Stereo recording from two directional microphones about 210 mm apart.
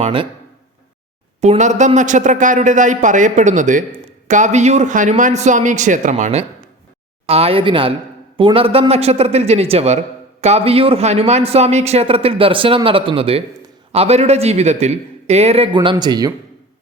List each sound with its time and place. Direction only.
0.0 s speech: 25° right (ahead or behind)
1.4 s a man's voice: 35° right (ahead or behind)